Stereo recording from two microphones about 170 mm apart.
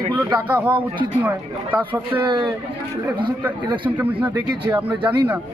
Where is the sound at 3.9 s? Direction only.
10° right (ahead or behind).